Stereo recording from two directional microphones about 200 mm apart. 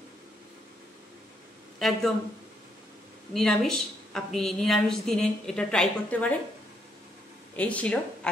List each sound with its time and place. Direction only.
1.8 s a woman's voice: centre (ahead or behind)
3.3 s a woman's voice: centre (ahead or behind)
7.5 s speech: 5° left (ahead or behind)